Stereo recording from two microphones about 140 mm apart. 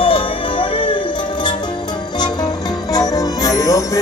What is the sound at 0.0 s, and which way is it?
Music, 40° left (ahead or behind).